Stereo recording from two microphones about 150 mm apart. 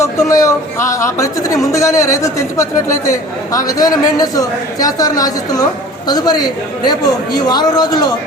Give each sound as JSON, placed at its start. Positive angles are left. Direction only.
{"t": 0.0, "sound": "a woman's voice", "side_deg": 20}